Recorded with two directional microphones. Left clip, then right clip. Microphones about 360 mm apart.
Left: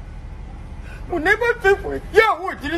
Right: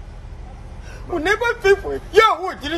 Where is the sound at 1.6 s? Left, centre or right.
Centre.